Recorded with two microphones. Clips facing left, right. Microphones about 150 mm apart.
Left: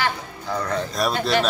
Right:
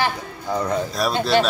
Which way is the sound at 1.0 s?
Centre (ahead or behind).